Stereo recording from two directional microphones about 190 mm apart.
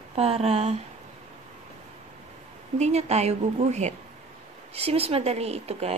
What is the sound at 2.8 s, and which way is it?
A woman's voice, 35° right (ahead or behind).